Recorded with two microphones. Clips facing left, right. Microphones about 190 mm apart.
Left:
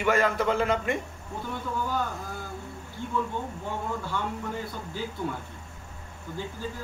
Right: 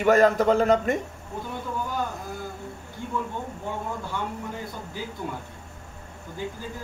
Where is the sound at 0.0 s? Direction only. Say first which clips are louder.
Right 6 dB; 40° right (ahead or behind).